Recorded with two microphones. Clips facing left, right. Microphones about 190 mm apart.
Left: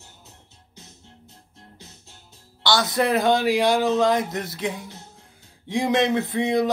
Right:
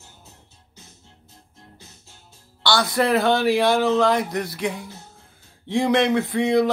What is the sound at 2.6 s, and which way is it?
Speech, 20° left (ahead or behind).